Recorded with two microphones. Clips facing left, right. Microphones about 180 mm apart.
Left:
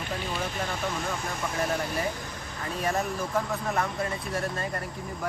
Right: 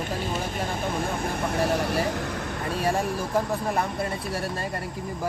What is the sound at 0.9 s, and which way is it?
Speech, 55° right (ahead or behind).